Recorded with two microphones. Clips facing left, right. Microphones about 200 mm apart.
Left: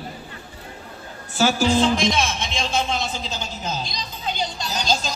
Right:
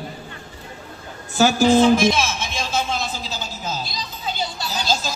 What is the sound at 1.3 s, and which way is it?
Speech, 45° right (ahead or behind).